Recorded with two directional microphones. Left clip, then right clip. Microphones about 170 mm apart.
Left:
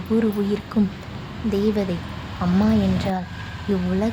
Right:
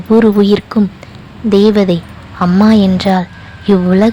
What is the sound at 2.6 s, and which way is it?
Speech, 40° right (ahead or behind).